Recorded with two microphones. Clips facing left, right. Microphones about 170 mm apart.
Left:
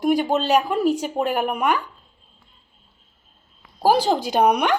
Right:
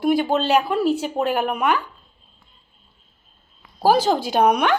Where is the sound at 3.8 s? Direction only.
15° left (ahead or behind).